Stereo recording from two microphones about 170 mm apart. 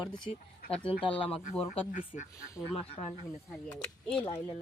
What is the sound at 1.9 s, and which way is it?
Speech, 50° left (ahead or behind).